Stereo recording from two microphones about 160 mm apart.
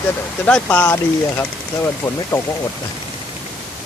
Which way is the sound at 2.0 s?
15° left (ahead or behind).